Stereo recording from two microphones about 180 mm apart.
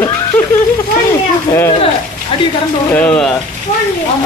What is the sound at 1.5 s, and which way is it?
Speech, 20° left (ahead or behind).